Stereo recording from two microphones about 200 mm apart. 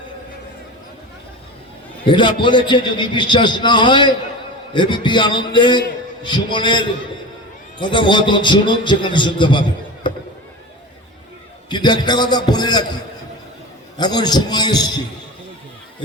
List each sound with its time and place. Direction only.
2.0 s a man's voice: 25° left (ahead or behind)
11.7 s a man's voice: 20° left (ahead or behind)
14.0 s a man's voice: 20° left (ahead or behind)